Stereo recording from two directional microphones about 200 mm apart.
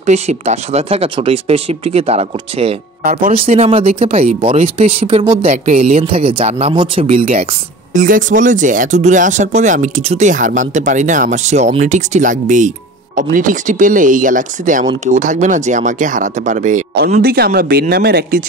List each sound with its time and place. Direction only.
0.0 s speech: 35° right (ahead or behind)
3.0 s speech: 45° right (ahead or behind)
3.4 s speech: 30° right (ahead or behind)
7.9 s speech: 40° right (ahead or behind)